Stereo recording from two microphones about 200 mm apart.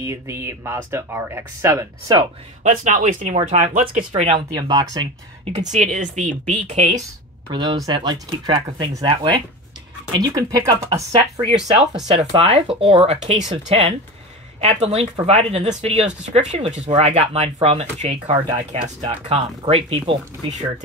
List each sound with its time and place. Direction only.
0.0 s speech: 15° right (ahead or behind)
2.6 s speech: 40° right (ahead or behind); by 5.5 s 20° right (ahead or behind)
5.7 s speech: 40° right (ahead or behind)
7.5 s speech: 20° right (ahead or behind)
12.4 s speech: 30° right (ahead or behind)